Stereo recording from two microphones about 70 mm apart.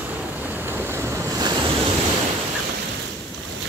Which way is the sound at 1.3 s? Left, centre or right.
Right.